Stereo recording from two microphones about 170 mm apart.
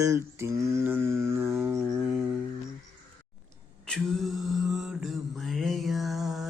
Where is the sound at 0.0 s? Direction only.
15° right (ahead or behind).